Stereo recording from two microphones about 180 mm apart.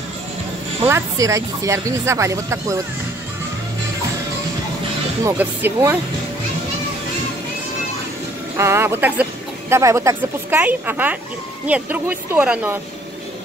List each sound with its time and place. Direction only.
0.8 s speech: 15° right (ahead or behind)
5.2 s speech: 10° right (ahead or behind)
8.5 s speech: 15° right (ahead or behind)